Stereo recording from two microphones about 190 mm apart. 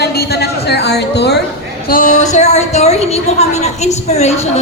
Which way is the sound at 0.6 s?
60° left (ahead or behind).